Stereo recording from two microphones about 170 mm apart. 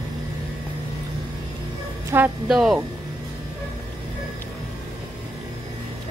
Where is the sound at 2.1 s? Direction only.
15° right (ahead or behind).